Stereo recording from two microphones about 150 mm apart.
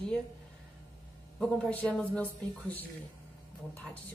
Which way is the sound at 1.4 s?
5° left (ahead or behind).